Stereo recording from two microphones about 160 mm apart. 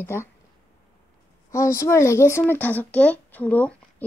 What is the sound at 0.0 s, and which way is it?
Speech, 15° left (ahead or behind).